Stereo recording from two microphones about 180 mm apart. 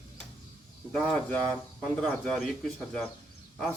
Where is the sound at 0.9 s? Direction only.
5° left (ahead or behind).